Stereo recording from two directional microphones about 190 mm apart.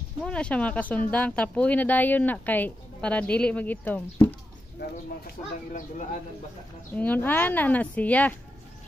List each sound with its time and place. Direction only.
0.2 s speech: 5° left (ahead or behind)
4.7 s speech: 50° left (ahead or behind)
6.9 s speech: 10° left (ahead or behind)